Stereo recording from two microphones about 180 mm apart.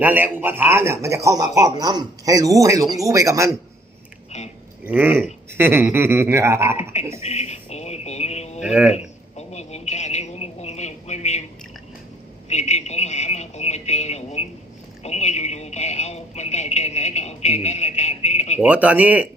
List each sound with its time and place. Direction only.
0.0 s a man's voice: 10° right (ahead or behind)
4.9 s a man's voice: 10° right (ahead or behind)
7.2 s a sound: 35° left (ahead or behind)
8.6 s speech: 5° right (ahead or behind)
9.5 s a sound: 40° left (ahead or behind)
12.5 s speech: 40° left (ahead or behind)
18.6 s a man's voice: 10° right (ahead or behind)